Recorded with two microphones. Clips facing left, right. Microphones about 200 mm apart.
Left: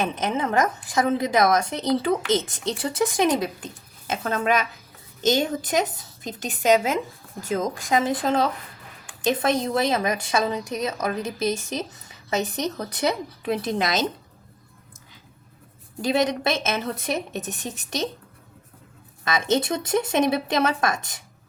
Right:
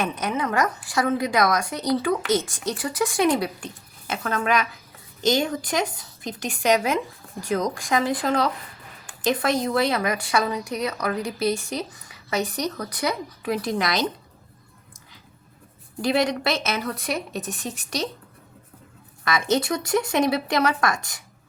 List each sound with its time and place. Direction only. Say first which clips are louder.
0.0 s a woman's voice: left 1 dB; 25° left (ahead or behind)
16.0 s a woman's voice: even; 20° left (ahead or behind)
19.2 s a woman's voice: even; 25° left (ahead or behind)